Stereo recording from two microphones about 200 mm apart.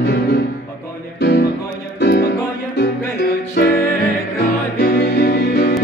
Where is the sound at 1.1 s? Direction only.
55° left (ahead or behind).